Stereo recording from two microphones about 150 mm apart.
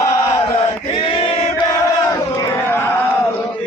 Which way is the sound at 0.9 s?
35° left (ahead or behind).